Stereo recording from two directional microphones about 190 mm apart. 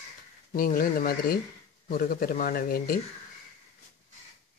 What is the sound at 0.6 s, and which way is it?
Speech, 50° left (ahead or behind).